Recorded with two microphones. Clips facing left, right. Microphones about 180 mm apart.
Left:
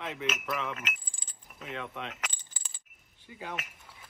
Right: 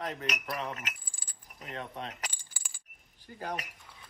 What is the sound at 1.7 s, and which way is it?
Chink, 35° right (ahead or behind).